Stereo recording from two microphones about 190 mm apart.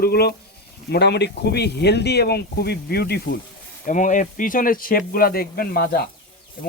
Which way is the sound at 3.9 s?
40° left (ahead or behind).